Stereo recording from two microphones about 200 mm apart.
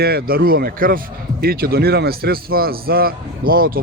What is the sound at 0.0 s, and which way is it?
Speech, 50° right (ahead or behind).